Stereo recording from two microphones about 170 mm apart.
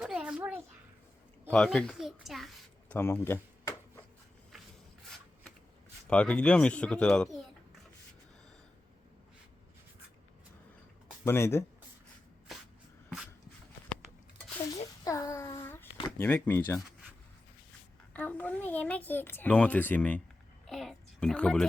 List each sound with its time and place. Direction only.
0.0 s a sound: 5° right (ahead or behind)
1.5 s a child's voice: 5° left (ahead or behind)
3.0 s a child's voice: 15° left (ahead or behind)
3.6 s a sound: 20° left (ahead or behind)
6.1 s a child's voice: 5° left (ahead or behind)
11.3 s a child's voice: 15° left (ahead or behind)
15.0 s a sound: 20° left (ahead or behind)
16.1 s a child's voice: 10° left (ahead or behind)
18.1 s a child's voice: 10° left (ahead or behind)